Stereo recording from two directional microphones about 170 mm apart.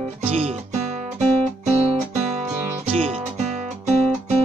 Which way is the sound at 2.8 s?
40° right (ahead or behind).